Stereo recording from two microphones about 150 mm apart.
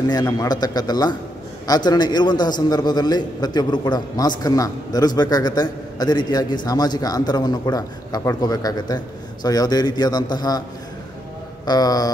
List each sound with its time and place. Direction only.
0.1 s a man's voice: 25° left (ahead or behind)
11.6 s a man's voice: 25° left (ahead or behind)